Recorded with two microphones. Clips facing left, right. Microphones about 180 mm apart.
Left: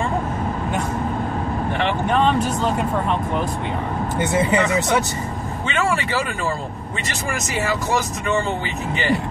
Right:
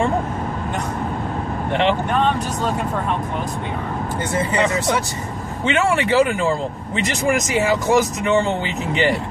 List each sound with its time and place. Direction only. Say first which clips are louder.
4.3 s speech: left 4 dB; 20° left (ahead or behind)
5.7 s speech: right 5 dB; 20° right (ahead or behind)